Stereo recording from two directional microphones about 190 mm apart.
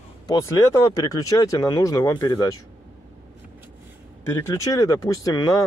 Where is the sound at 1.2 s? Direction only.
20° left (ahead or behind).